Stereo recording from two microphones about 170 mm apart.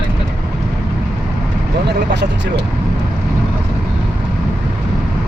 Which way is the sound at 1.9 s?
90° right.